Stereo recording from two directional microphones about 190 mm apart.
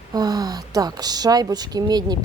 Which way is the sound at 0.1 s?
20° right (ahead or behind).